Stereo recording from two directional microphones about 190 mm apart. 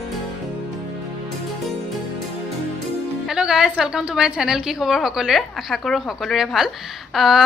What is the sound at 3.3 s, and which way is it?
A woman's voice, 5° right (ahead or behind).